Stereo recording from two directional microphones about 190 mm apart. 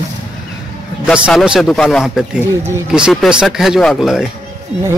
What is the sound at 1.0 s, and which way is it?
Speech, centre (ahead or behind).